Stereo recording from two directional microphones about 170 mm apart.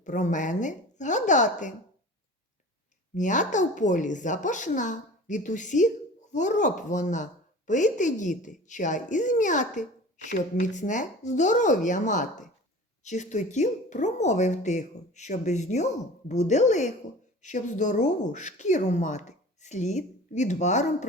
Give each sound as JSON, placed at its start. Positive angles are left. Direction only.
{"t": 0.0, "sound": "speech", "side_deg": 45}
{"t": 3.2, "sound": "speech", "side_deg": 45}